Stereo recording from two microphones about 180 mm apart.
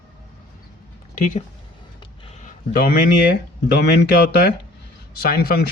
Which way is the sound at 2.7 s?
55° left (ahead or behind).